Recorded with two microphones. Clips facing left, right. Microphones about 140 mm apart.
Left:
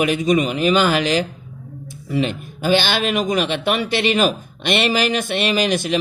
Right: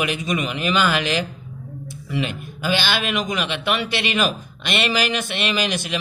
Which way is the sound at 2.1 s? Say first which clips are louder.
Left 5 dB; 50° left (ahead or behind).